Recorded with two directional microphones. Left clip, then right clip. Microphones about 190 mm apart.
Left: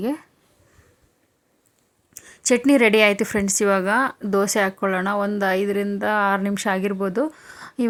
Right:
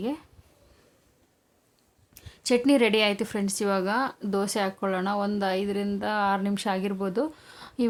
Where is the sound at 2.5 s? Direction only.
20° left (ahead or behind).